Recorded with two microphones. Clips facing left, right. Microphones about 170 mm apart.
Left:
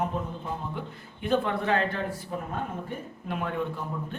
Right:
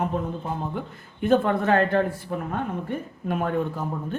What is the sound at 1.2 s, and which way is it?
Speech, 45° right (ahead or behind).